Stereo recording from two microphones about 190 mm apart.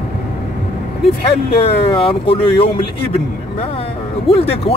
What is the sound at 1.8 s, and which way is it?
Speech, 30° left (ahead or behind).